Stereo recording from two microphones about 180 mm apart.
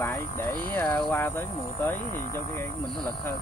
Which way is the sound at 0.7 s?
10° left (ahead or behind).